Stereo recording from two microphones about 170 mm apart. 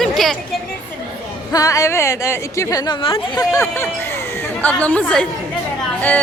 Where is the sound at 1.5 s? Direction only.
20° left (ahead or behind).